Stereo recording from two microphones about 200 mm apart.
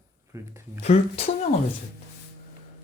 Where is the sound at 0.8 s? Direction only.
30° left (ahead or behind).